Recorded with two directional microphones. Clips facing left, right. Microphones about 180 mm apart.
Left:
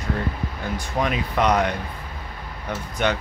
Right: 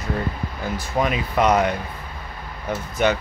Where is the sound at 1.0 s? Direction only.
5° right (ahead or behind).